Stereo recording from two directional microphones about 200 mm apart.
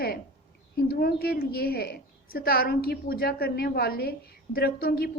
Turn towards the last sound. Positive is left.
turn(degrees=50)  # may be behind; listen again after turning